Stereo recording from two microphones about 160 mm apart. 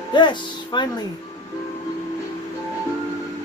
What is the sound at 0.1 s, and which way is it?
Speech, 30° left (ahead or behind).